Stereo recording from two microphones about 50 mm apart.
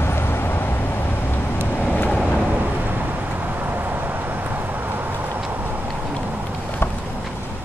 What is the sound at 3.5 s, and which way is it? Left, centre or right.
Vehicle, right.